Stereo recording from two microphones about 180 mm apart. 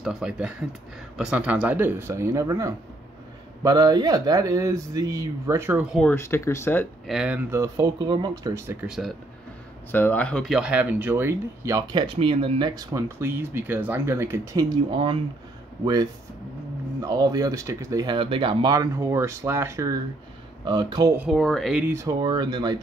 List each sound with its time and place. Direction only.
0.0 s speech: 5° right (ahead or behind)
6.0 s speech: 15° left (ahead or behind)
7.1 s speech: 5° right (ahead or behind)
8.8 s speech: 5° right (ahead or behind)
9.8 s speech: 10° left (ahead or behind); by 21.1 s 25° right (ahead or behind)
21.2 s speech: centre (ahead or behind)
21.8 s speech: 15° right (ahead or behind)